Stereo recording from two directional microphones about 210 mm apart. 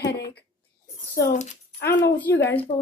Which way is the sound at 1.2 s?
50° left (ahead or behind).